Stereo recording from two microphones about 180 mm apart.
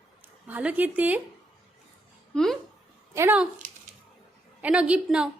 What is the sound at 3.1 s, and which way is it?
Speech, 10° right (ahead or behind).